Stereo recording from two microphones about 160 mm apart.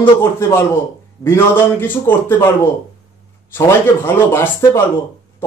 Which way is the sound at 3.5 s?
15° left (ahead or behind).